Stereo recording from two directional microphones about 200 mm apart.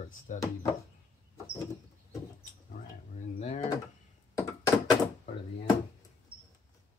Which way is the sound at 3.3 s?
35° left (ahead or behind).